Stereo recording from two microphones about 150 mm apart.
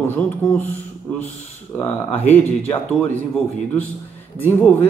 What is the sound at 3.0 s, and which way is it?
Speech, 10° left (ahead or behind).